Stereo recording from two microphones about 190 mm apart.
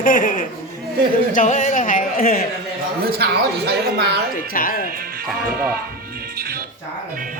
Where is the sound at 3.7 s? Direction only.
60° right (ahead or behind).